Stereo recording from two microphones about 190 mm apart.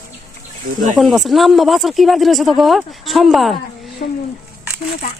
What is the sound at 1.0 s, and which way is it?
Speech, centre (ahead or behind).